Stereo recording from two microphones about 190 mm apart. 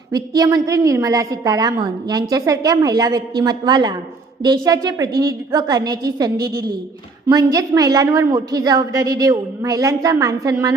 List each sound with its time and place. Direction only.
0.1 s a woman's voice: 20° right (ahead or behind)